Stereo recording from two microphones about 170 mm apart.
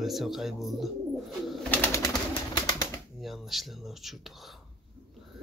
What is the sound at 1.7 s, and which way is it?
Bird, 15° left (ahead or behind).